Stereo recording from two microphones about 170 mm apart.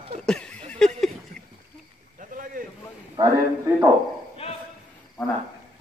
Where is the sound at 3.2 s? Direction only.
30° right (ahead or behind).